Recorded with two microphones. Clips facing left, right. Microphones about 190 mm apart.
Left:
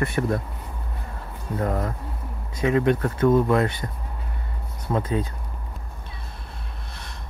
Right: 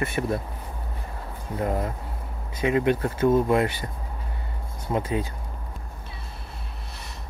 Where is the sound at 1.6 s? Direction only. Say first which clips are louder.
Left 1 dB; 20° right (ahead or behind).